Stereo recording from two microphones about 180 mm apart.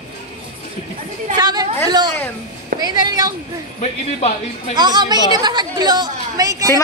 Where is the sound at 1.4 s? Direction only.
20° right (ahead or behind).